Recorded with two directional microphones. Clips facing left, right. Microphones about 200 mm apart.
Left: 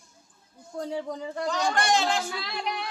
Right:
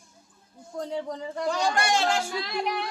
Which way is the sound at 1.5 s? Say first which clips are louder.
Left 1 dB; 10° right (ahead or behind).